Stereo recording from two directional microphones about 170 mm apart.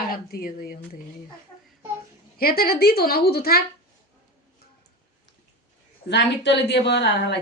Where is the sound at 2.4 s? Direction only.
65° left (ahead or behind).